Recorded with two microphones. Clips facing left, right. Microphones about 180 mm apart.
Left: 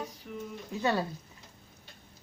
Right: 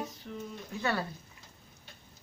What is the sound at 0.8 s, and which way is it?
Speech, 20° left (ahead or behind).